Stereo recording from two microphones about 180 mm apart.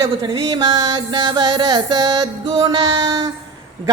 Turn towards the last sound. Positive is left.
turn(degrees=-20)  # may be behind; listen again after turning